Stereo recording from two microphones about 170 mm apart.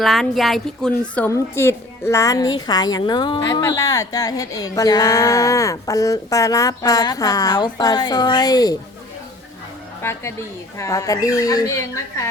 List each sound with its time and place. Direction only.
0.0 s a woman's voice: centre (ahead or behind); by 8.7 s 20° left (ahead or behind)
10.0 s a woman's voice: 15° left (ahead or behind)